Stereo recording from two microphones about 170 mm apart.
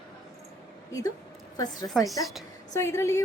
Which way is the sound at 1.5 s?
20° left (ahead or behind).